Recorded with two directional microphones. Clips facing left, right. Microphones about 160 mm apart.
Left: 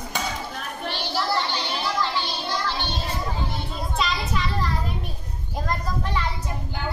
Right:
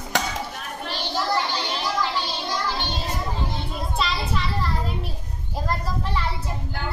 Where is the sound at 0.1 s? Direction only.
90° right.